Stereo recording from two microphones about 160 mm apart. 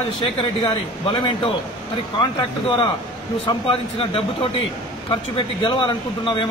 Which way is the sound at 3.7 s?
35° left (ahead or behind).